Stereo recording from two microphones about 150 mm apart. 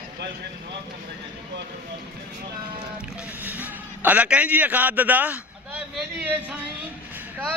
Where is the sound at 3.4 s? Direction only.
10° right (ahead or behind).